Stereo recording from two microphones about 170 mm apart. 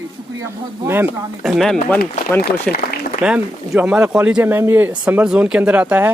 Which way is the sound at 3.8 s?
5° right (ahead or behind).